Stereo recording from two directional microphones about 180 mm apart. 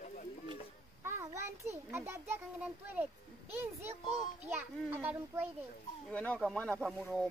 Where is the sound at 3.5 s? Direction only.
10° right (ahead or behind).